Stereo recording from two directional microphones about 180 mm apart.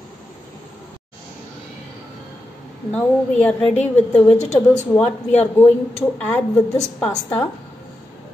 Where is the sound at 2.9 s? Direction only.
10° left (ahead or behind).